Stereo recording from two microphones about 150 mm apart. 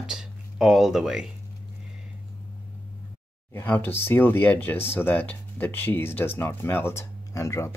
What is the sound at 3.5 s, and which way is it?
Speech, 10° left (ahead or behind).